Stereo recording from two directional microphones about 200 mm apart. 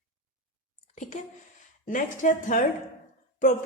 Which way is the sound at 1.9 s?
40° left (ahead or behind).